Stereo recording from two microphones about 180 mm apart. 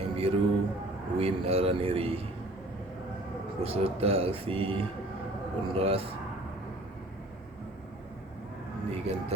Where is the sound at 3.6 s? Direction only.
35° right (ahead or behind).